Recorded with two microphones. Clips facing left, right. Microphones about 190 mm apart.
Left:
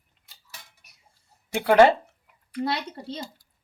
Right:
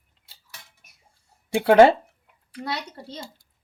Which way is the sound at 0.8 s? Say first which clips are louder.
Right 1 dB; 50° right (ahead or behind).